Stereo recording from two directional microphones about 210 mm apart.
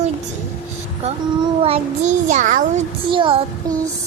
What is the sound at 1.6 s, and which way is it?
A child's voice, 30° right (ahead or behind).